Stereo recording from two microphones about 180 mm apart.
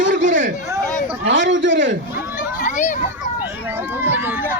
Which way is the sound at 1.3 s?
90° right.